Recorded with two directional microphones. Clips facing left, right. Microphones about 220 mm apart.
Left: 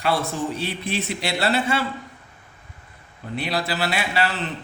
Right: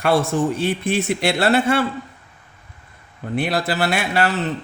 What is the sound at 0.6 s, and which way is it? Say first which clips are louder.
A man's voice: right 6 dB; 50° right (ahead or behind).